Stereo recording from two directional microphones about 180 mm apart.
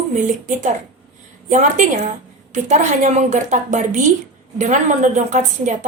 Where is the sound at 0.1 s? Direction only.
45° right (ahead or behind).